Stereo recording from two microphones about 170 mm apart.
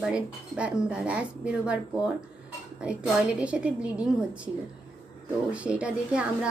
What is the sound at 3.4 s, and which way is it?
A woman's voice, 5° right (ahead or behind).